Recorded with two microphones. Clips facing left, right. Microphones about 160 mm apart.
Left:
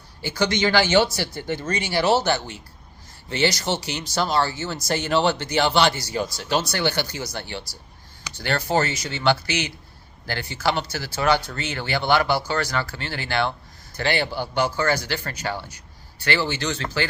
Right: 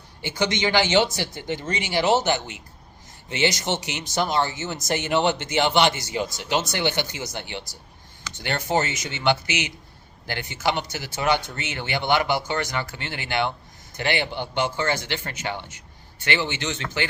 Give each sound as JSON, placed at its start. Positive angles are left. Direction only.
{"t": 0.2, "sound": "speech", "side_deg": -20}